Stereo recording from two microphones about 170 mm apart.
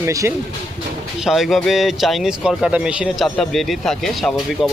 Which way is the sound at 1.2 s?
Centre (ahead or behind).